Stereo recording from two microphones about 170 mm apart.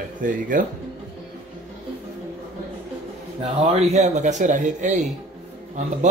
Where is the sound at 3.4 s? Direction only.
40° right (ahead or behind).